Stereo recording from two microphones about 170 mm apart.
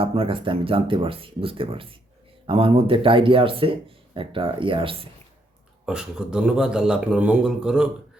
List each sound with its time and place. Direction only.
0.0 s speech: 30° right (ahead or behind)
5.8 s a man's voice: 5° right (ahead or behind)